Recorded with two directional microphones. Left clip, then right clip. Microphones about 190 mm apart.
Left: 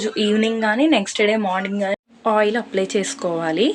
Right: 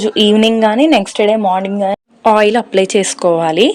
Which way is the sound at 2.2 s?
45° right (ahead or behind).